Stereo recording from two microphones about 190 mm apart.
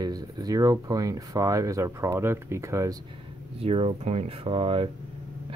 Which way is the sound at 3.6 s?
30° right (ahead or behind).